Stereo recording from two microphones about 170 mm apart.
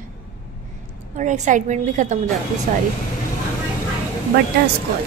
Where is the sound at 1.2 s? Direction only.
50° right (ahead or behind).